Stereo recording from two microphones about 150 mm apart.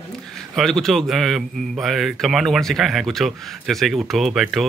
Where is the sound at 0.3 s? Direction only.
5° left (ahead or behind).